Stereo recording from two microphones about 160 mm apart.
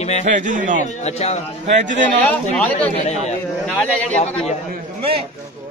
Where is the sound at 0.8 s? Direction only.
45° left (ahead or behind).